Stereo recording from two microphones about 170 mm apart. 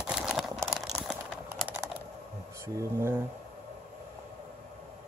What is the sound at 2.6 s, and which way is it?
Speech, 15° right (ahead or behind).